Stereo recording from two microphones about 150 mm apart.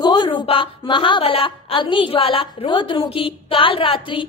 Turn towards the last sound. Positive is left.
turn(degrees=35)  # may be behind; listen again after turning